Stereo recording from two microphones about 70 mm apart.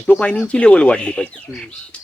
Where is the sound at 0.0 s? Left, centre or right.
Centre.